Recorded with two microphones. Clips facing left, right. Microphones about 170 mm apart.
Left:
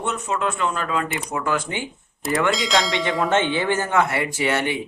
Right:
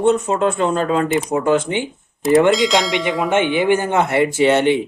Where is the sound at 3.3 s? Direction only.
15° right (ahead or behind).